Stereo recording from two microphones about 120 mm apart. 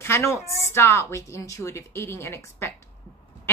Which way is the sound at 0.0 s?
25° left (ahead or behind).